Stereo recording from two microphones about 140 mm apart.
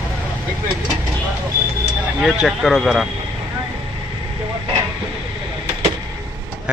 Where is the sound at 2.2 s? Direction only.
Centre (ahead or behind).